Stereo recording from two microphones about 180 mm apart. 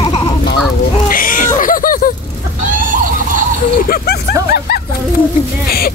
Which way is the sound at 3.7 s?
55° left (ahead or behind).